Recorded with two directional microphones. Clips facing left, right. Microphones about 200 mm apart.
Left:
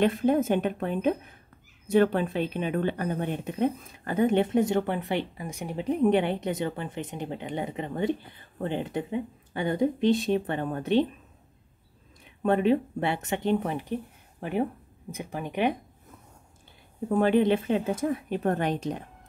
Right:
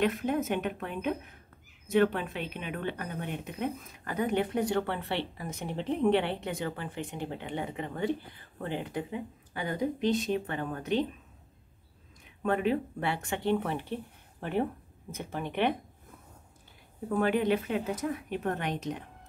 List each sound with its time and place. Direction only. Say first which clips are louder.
0.0 s a woman's voice: left 6 dB; 30° left (ahead or behind)
12.4 s speech: left 5 dB; 30° left (ahead or behind); by 15.7 s 10° left (ahead or behind)
17.1 s speech: left 5 dB; 30° left (ahead or behind)